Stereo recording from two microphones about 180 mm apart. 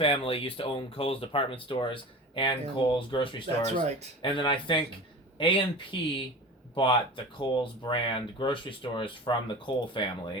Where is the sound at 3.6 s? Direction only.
40° right (ahead or behind).